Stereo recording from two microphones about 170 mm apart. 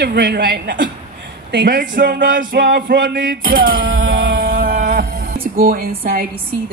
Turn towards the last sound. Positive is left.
turn(degrees=-60)  # may be behind; listen again after turning